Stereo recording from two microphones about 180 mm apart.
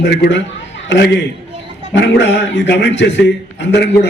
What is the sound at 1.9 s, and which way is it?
A man's voice, 85° left.